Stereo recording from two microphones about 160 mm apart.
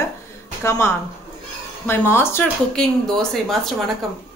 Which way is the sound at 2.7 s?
5° left (ahead or behind).